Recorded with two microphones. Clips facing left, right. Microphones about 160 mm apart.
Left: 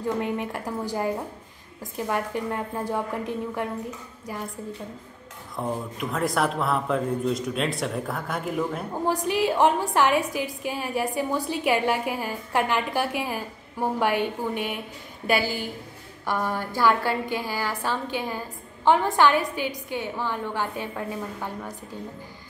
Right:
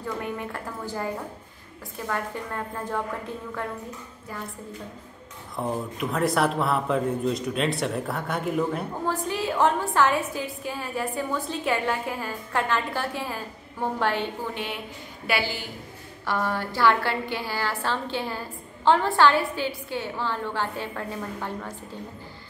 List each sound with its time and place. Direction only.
0.2 s a woman's voice: 20° left (ahead or behind)
2.0 s a woman's voice: 15° left (ahead or behind)
5.6 s a man's voice: centre (ahead or behind)
9.2 s a woman's voice: 15° left (ahead or behind)
15.2 s a woman's voice: 45° left (ahead or behind)
16.3 s a woman's voice: 15° left (ahead or behind)